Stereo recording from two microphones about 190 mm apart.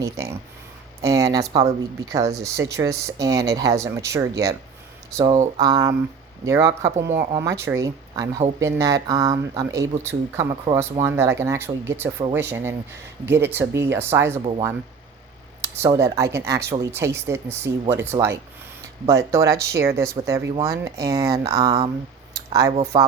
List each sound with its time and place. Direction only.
0.0 s speech: 15° right (ahead or behind)
5.1 s mantra: 20° right (ahead or behind)
6.4 s speech: 15° right (ahead or behind)
10.7 s mantra: 30° right (ahead or behind)
11.0 s speech: 15° right (ahead or behind)
15.6 s speech: 15° right (ahead or behind)
22.4 s a sound: 15° right (ahead or behind)
22.9 s mantra: 20° right (ahead or behind)